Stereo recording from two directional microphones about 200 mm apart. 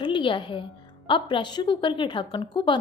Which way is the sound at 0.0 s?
25° left (ahead or behind).